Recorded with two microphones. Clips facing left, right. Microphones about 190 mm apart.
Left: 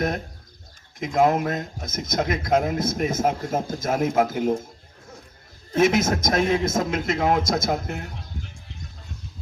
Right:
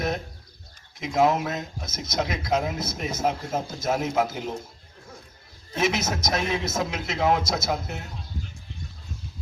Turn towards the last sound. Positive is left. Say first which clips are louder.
# left 3 dB
turn(degrees=50)  # may be behind; listen again after turning